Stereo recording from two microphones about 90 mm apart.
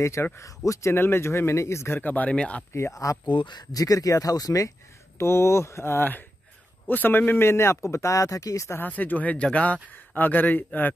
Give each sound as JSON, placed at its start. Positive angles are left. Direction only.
{"t": 0.0, "sound": "speech", "side_deg": 30}
{"t": 2.0, "sound": "speech", "side_deg": 20}
{"t": 2.7, "sound": "speech", "side_deg": 35}
{"t": 3.3, "sound": "speech", "side_deg": 60}
{"t": 3.7, "sound": "speech", "side_deg": 40}
{"t": 5.1, "sound": "speech", "side_deg": 30}
{"t": 8.7, "sound": "speech", "side_deg": 20}